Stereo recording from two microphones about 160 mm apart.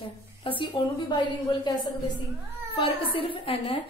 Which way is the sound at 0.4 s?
30° left (ahead or behind).